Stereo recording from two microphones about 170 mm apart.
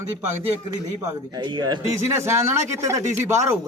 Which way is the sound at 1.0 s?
25° right (ahead or behind).